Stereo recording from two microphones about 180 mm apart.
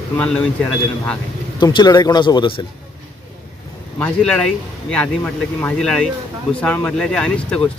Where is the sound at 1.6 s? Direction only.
25° left (ahead or behind).